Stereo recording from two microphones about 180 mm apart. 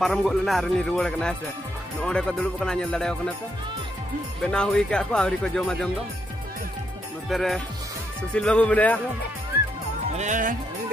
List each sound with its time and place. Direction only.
0.0 s speech: centre (ahead or behind)
4.4 s speech: 5° left (ahead or behind)
7.2 s speech: centre (ahead or behind)
10.1 s speech: 45° right (ahead or behind)